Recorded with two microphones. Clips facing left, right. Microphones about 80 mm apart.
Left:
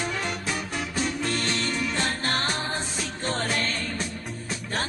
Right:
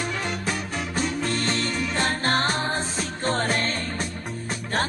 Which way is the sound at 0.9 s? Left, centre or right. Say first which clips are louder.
Right 2 dB; right.